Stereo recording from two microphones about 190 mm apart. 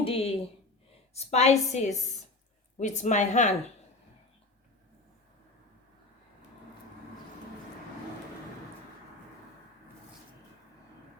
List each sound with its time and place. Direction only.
0.0 s a woman's voice: 30° left (ahead or behind)